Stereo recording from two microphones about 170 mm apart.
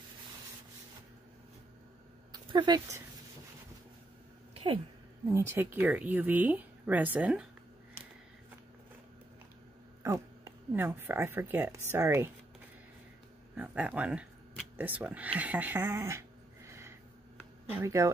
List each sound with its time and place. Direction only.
2.3 s speech: 25° right (ahead or behind)
5.3 s speech: 15° right (ahead or behind)
10.0 s speech: 15° right (ahead or behind)
13.6 s speech: 10° right (ahead or behind)
17.4 s a sound: 10° right (ahead or behind)